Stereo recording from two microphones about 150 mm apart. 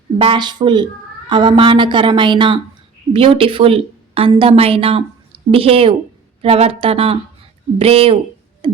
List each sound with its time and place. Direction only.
0.2 s a woman's voice: 30° right (ahead or behind)
8.6 s music: 35° right (ahead or behind)